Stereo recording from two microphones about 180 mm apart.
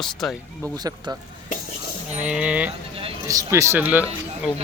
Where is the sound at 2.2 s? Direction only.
5° right (ahead or behind).